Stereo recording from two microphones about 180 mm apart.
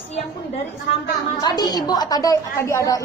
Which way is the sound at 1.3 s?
20° left (ahead or behind).